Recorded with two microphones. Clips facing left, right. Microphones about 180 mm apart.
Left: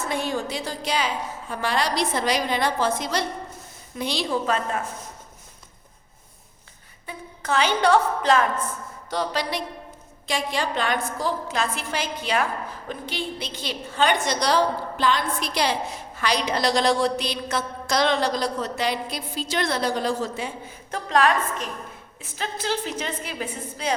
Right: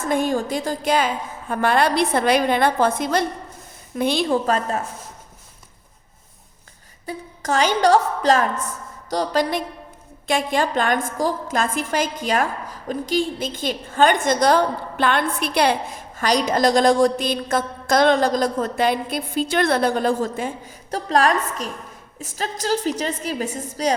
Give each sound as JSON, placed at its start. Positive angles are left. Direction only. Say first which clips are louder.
{"t": 0.1, "sound": "a woman's voice", "louder": "right 8 dB", "side_deg": -50}
{"t": 7.0, "sound": "a woman's voice", "louder": "right 6 dB", "side_deg": -40}